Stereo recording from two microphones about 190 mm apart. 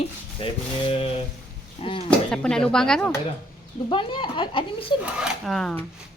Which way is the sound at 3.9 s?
25° left (ahead or behind).